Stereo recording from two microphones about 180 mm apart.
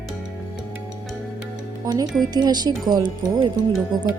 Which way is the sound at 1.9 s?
20° right (ahead or behind).